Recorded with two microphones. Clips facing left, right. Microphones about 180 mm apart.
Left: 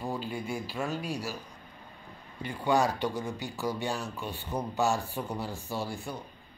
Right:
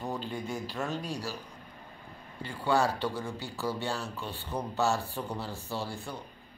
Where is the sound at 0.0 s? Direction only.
10° left (ahead or behind).